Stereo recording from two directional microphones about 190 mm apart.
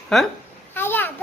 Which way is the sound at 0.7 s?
10° left (ahead or behind).